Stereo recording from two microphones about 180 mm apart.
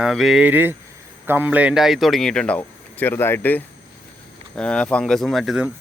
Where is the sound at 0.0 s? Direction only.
Centre (ahead or behind).